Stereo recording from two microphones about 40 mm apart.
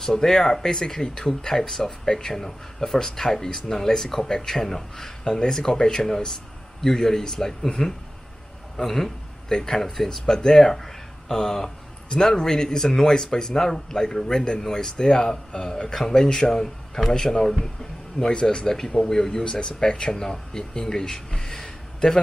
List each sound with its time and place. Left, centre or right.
0.0 s a man's voice: centre
18.3 s speech: left